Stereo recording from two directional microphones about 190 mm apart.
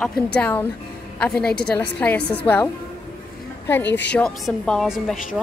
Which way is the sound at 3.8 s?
70° left (ahead or behind).